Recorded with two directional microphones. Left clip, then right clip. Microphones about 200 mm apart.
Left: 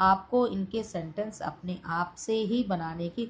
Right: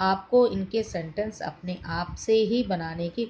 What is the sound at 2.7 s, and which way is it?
Speech, 45° right (ahead or behind).